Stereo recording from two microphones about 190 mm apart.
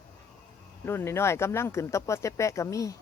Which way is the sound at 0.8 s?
15° left (ahead or behind).